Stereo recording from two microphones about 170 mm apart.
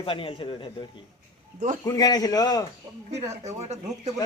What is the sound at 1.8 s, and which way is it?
Speech, 25° left (ahead or behind).